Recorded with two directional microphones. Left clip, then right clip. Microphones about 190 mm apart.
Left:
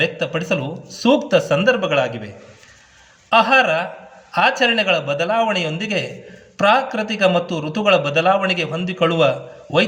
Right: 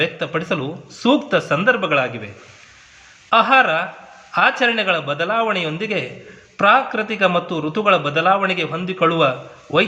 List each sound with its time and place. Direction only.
0.0 s a man's voice: 45° left (ahead or behind)
3.2 s a man's voice: 45° left (ahead or behind)